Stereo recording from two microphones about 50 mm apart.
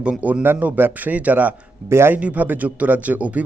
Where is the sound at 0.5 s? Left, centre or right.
Right.